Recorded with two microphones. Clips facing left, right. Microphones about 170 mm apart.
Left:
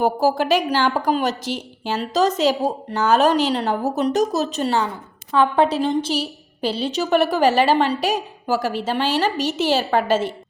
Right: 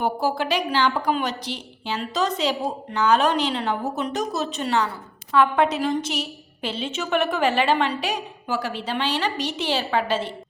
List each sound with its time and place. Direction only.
0.0 s a woman's voice: 40° left (ahead or behind)